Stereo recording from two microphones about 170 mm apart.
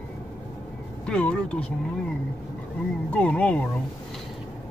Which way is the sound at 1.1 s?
5° left (ahead or behind).